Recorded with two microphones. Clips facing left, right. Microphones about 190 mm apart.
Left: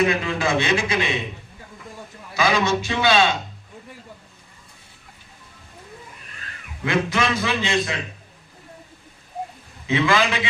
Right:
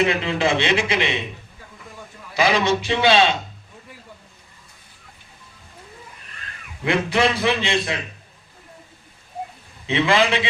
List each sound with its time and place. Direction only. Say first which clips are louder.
0.0 s a man's voice: right 1 dB; 25° right (ahead or behind)
2.3 s a man's voice: right 1 dB; 30° right (ahead or behind)
6.8 s a man's voice: right 2 dB; 30° right (ahead or behind)
9.8 s a man's voice: right 1 dB; 25° right (ahead or behind)